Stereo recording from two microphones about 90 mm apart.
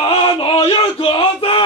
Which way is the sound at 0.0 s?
65° left (ahead or behind).